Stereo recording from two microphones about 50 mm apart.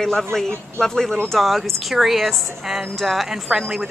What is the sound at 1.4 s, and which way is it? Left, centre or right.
A woman's voice, centre.